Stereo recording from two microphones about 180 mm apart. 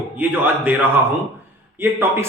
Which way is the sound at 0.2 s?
10° right (ahead or behind).